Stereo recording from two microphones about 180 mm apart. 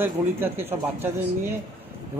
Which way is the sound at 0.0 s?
10° right (ahead or behind).